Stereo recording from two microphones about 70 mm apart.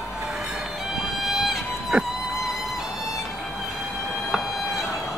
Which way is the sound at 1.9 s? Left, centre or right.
Centre.